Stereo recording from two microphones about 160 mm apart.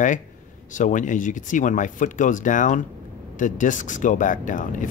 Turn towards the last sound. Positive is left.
turn(degrees=55)  # may be behind; listen again after turning